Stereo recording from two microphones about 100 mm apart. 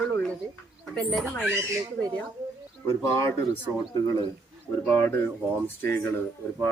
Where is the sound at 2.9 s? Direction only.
30° left (ahead or behind).